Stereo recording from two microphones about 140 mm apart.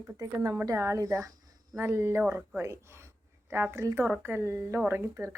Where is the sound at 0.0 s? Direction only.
20° right (ahead or behind).